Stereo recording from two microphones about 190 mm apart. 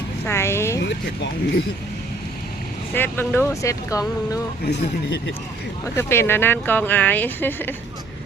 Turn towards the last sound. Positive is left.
turn(degrees=10)  # may be behind; listen again after turning